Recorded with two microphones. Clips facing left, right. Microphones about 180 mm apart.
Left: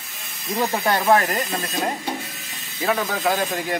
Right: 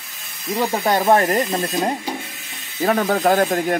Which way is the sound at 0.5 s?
10° right (ahead or behind).